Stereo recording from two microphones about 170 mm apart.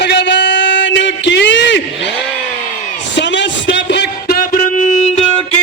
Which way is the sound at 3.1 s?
90° left.